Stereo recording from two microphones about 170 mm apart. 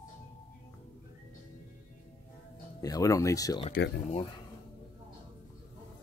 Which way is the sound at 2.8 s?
20° left (ahead or behind).